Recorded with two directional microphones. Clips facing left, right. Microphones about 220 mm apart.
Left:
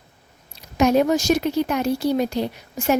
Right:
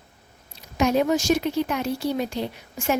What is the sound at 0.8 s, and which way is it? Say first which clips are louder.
A woman's voice: left 3 dB; 40° left (ahead or behind).